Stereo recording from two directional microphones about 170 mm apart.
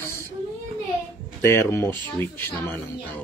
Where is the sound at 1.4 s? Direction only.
15° left (ahead or behind).